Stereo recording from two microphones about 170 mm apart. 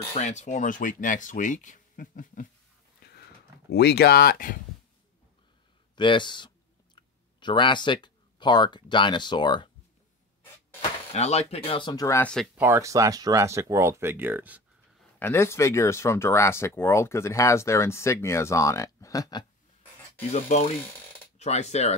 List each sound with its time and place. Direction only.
0.1 s speech: 45° left (ahead or behind)
3.7 s speech: 70° left (ahead or behind)
5.9 s speech: 30° left (ahead or behind)
10.8 s speech: 40° left (ahead or behind); by 12.3 s 20° left (ahead or behind)
12.5 s speech: 15° right (ahead or behind)
15.1 s speech: 15° left (ahead or behind)
20.2 s speech: 40° left (ahead or behind)